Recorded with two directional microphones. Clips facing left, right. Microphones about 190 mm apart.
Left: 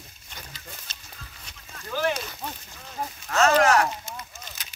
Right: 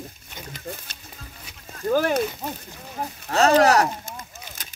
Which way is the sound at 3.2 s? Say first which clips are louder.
Right 3 dB; 35° right (ahead or behind).